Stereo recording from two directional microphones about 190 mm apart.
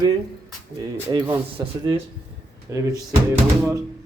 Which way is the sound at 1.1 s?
20° right (ahead or behind).